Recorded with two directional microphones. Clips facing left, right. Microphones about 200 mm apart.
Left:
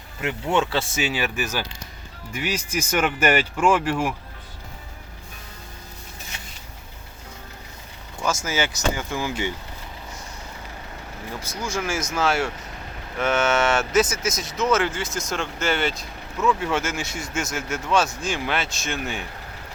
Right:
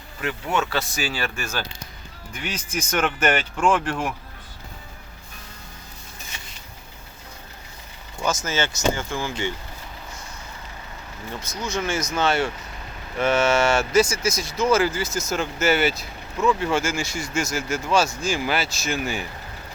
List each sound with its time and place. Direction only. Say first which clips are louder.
0.2 s speech: left 2 dB; 25° left (ahead or behind); by 4.1 s 5° left (ahead or behind)
8.4 s speech: right 2 dB; 15° left (ahead or behind)
11.5 s speech: even; 30° left (ahead or behind)
11.8 s speech: right 1 dB; 5° left (ahead or behind)